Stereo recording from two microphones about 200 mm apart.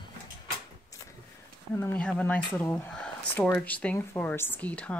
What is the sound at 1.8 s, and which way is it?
Speech, 5° left (ahead or behind).